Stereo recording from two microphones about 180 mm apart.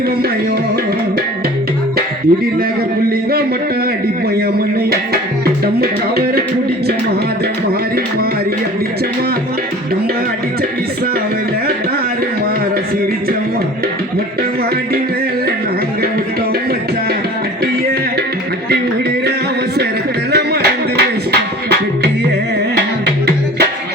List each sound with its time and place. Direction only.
5.8 s music: 60° right (ahead or behind)
20.3 s music: 65° right (ahead or behind)